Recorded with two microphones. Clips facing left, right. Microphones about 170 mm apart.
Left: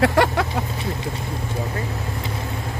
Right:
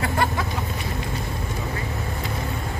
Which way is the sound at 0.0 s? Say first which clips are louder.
Left 6 dB; 90° left.